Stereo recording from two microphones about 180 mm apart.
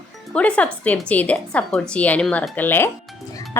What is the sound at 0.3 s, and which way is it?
A woman's voice, 5° left (ahead or behind).